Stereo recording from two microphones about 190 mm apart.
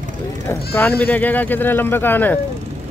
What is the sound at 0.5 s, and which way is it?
Speech, 10° left (ahead or behind).